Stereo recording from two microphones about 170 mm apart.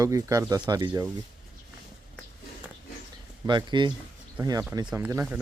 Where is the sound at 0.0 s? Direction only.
20° right (ahead or behind).